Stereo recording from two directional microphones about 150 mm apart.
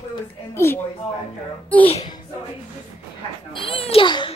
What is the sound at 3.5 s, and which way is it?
Children playing, 35° left (ahead or behind).